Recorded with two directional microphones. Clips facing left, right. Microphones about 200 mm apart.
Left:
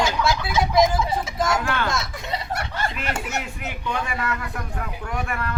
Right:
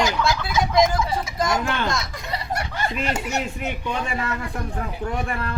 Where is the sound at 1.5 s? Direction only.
20° right (ahead or behind).